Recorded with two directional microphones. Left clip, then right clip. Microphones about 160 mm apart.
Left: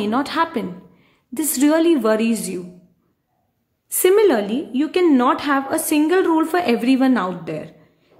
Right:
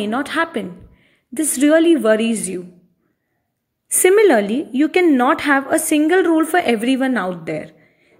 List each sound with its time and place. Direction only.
0.0 s a woman's voice: 10° right (ahead or behind)
3.9 s a woman's voice: 20° right (ahead or behind)